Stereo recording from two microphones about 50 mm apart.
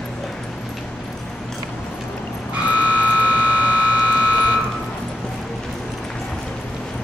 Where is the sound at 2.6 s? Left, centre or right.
Right.